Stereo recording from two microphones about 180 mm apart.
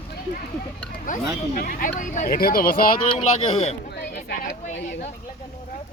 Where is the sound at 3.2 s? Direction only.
40° left (ahead or behind).